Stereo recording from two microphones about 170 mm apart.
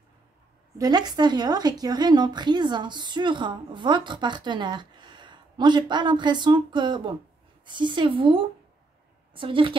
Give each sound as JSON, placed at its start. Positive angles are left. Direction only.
{"t": 0.7, "sound": "a woman's voice", "side_deg": -25}